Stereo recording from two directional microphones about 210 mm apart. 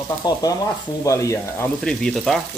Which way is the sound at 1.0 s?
15° left (ahead or behind).